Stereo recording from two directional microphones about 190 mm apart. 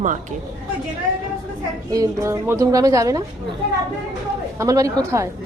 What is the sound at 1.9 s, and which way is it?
A woman's voice, 15° right (ahead or behind).